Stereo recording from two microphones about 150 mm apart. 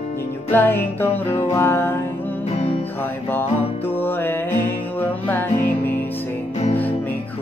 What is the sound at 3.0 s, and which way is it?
Music, 15° left (ahead or behind).